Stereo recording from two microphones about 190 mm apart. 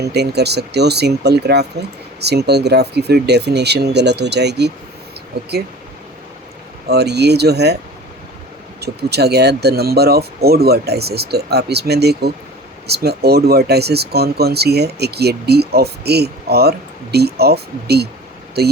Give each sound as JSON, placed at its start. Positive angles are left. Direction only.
{"t": 0.1, "sound": "speech", "side_deg": -60}
{"t": 6.8, "sound": "speech", "side_deg": -60}
{"t": 8.8, "sound": "speech", "side_deg": -60}